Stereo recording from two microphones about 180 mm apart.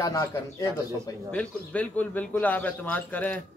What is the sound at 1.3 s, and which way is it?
A man's voice, 10° left (ahead or behind).